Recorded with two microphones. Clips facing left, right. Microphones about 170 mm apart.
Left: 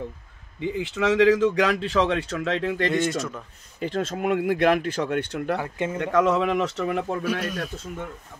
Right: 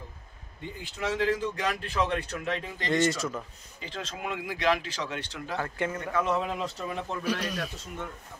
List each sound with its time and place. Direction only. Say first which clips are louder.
0.6 s speech: left 11 dB; 90° left
2.9 s speech: left 2 dB; centre (ahead or behind)
3.8 s speech: left 11 dB; 50° left (ahead or behind)
5.6 s speech: left 3 dB; 20° left (ahead or behind)
5.9 s a man's voice: left 9 dB; 85° left; by 7.4 s 55° left (ahead or behind)